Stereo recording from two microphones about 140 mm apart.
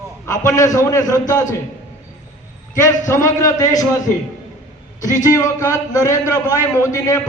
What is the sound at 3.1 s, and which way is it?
Speech, 20° left (ahead or behind).